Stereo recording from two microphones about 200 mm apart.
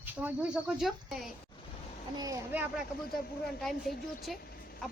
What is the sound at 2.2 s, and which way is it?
Speech, 15° right (ahead or behind).